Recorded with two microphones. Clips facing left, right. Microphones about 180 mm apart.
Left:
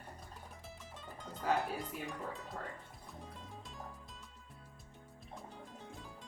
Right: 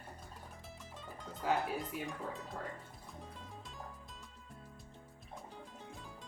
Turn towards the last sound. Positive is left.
turn(degrees=0)  # may be behind; listen again after turning